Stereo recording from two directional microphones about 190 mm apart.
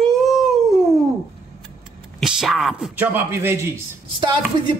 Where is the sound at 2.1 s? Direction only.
Centre (ahead or behind).